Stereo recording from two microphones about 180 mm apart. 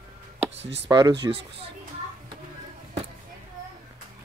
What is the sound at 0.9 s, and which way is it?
Speech, 20° right (ahead or behind).